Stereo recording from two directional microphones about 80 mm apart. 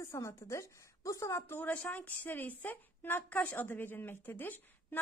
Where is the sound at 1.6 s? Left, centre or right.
Centre.